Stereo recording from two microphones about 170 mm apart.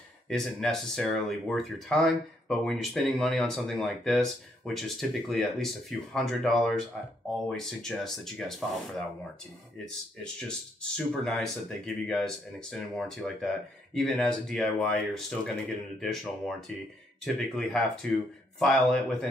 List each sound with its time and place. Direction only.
0.3 s speech: 5° left (ahead or behind)
10.8 s speech: 5° left (ahead or behind)